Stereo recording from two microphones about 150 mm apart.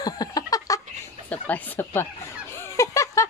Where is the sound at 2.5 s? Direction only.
20° left (ahead or behind).